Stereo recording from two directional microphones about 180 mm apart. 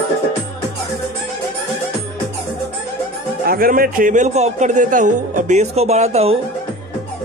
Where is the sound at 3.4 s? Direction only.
55° right (ahead or behind); by 6.4 s 35° right (ahead or behind).